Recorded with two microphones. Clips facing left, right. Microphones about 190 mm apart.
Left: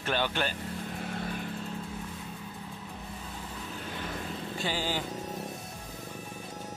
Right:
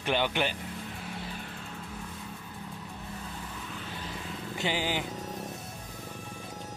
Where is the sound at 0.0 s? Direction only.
15° right (ahead or behind).